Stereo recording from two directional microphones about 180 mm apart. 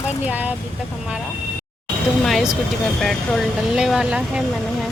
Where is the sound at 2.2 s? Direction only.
Centre (ahead or behind).